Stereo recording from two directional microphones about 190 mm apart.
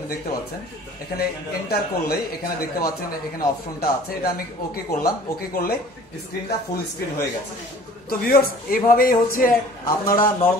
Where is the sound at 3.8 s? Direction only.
55° left (ahead or behind).